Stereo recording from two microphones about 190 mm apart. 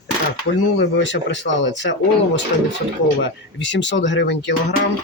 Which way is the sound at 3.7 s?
70° left (ahead or behind).